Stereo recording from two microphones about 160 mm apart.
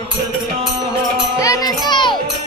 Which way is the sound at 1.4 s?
20° left (ahead or behind).